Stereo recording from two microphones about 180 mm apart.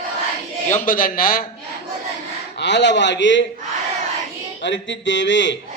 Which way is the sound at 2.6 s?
80° left.